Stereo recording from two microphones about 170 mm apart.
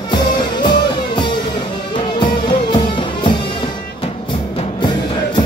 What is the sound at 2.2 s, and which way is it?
Music, 25° left (ahead or behind).